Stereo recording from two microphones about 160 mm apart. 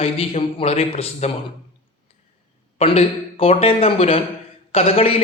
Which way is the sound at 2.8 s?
40° left (ahead or behind).